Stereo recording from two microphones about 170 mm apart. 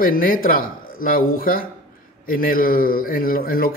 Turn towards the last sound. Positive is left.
turn(degrees=60)  # may be behind; listen again after turning